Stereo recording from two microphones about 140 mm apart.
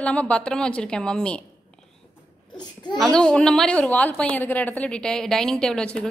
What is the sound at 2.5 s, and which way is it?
Babbling, 30° left (ahead or behind).